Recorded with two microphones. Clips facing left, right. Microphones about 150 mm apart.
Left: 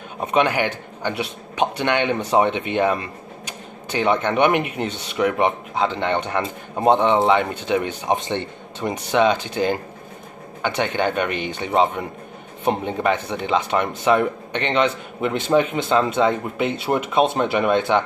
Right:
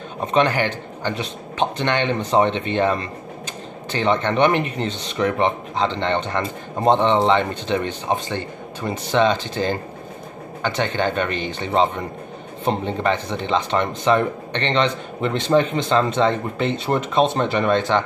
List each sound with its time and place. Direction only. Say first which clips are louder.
0.2 s speech: even; 10° left (ahead or behind)
8.2 s a man's voice: left 1 dB; 20° left (ahead or behind)
9.1 s speech: even; 10° left (ahead or behind)